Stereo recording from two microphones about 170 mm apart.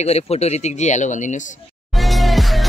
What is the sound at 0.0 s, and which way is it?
Speech, 40° left (ahead or behind).